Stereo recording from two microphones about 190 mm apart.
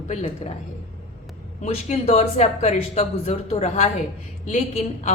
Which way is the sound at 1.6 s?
35° left (ahead or behind).